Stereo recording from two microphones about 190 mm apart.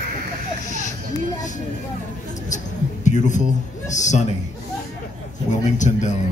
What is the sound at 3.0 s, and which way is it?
A man's voice, 40° left (ahead or behind).